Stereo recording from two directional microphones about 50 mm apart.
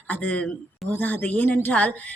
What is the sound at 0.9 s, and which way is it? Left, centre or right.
A woman's voice, left.